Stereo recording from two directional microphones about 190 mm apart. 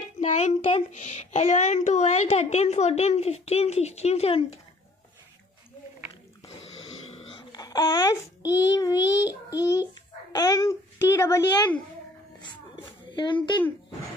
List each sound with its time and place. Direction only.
0.2 s a child's voice: 35° left (ahead or behind)
7.1 s dog: 30° left (ahead or behind)
8.5 s a child's voice: 20° left (ahead or behind)
12.4 s music: 25° left (ahead or behind)
13.1 s speech: 25° left (ahead or behind)